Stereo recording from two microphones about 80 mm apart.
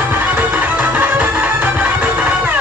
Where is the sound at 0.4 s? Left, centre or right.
Centre.